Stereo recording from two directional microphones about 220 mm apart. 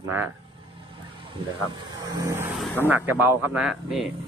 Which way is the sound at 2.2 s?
15° right (ahead or behind).